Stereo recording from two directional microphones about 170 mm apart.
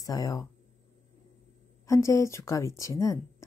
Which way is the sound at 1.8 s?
20° left (ahead or behind).